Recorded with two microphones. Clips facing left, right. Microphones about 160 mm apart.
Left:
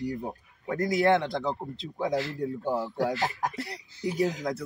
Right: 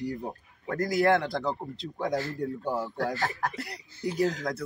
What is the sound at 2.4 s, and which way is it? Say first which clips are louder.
Speech: left 1 dB; 20° left (ahead or behind).